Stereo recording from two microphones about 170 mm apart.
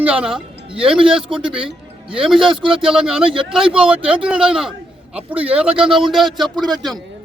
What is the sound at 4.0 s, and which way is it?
Speech, 30° right (ahead or behind).